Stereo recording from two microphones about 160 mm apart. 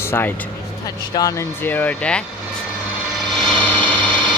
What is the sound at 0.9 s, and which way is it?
Speech, 25° left (ahead or behind).